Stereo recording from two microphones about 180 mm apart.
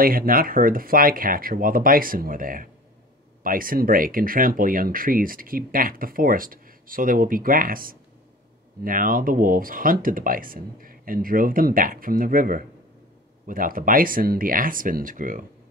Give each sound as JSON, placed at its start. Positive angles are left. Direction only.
{"t": 0.0, "sound": "speech", "side_deg": -55}